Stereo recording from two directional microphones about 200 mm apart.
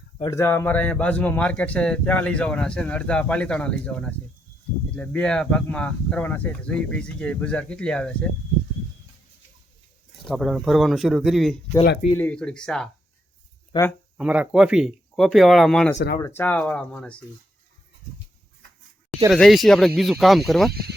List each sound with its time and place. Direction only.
0.3 s speech: 15° left (ahead or behind)
10.2 s speech: centre (ahead or behind)
13.7 s speech: 25° left (ahead or behind)
14.2 s speech: 5° right (ahead or behind)
19.3 s speech: centre (ahead or behind)